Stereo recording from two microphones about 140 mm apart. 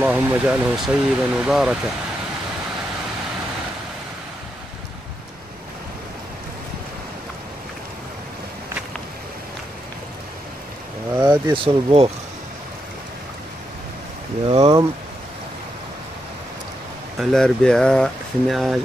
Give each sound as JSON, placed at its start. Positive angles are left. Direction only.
{"t": 0.0, "sound": "speech", "side_deg": -10}
{"t": 11.2, "sound": "speech", "side_deg": -35}
{"t": 14.5, "sound": "speech", "side_deg": -45}
{"t": 17.2, "sound": "speech", "side_deg": 5}